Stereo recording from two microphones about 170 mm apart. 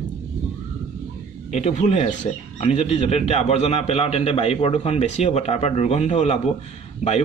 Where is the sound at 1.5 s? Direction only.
40° left (ahead or behind).